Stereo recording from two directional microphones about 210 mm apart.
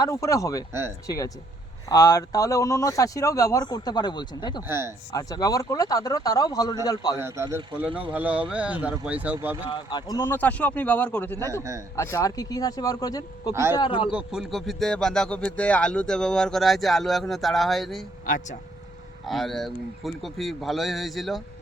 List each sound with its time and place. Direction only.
0.0 s speech: 15° left (ahead or behind)
0.7 s speech: 10° right (ahead or behind)
1.0 s speech: 15° left (ahead or behind)
4.6 s speech: 10° right (ahead or behind)
5.1 s a man's voice: 15° left (ahead or behind)
7.2 s speech: 10° right (ahead or behind)
8.1 s speech: 5° right (ahead or behind)
9.6 s speech: 20° left (ahead or behind)
13.5 s speech: 10° right (ahead or behind)
13.7 s a man's voice: 25° left (ahead or behind)
14.1 s speech: 5° right (ahead or behind)
18.3 s speech: 40° left (ahead or behind)
19.2 s speech: centre (ahead or behind)